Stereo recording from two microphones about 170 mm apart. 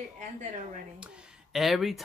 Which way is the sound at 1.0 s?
Centre (ahead or behind).